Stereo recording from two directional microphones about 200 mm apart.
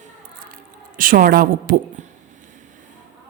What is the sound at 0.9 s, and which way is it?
Speech, 45° right (ahead or behind).